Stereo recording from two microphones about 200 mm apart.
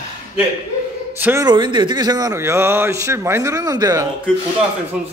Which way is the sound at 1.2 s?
10° right (ahead or behind).